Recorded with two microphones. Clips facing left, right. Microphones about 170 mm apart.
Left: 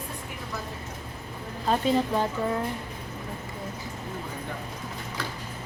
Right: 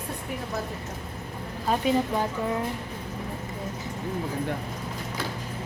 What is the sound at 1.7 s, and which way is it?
Speech, 10° right (ahead or behind).